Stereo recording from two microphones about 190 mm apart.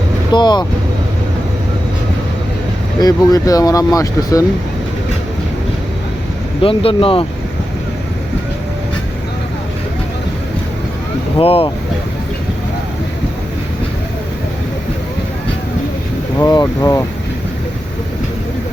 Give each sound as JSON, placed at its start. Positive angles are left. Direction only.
{"t": 0.3, "sound": "speech", "side_deg": 25}
{"t": 3.0, "sound": "speech", "side_deg": 20}
{"t": 6.6, "sound": "speech", "side_deg": 30}
{"t": 11.3, "sound": "speech", "side_deg": 30}
{"t": 16.4, "sound": "speech", "side_deg": 20}